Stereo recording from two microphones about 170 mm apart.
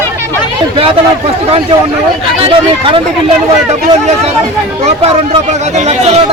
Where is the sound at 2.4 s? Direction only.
30° right (ahead or behind).